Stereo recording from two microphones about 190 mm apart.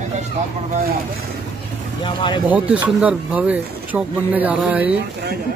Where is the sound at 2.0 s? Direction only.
25° left (ahead or behind).